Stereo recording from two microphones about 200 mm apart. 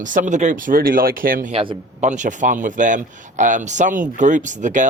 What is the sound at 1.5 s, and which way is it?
Speech, 30° right (ahead or behind).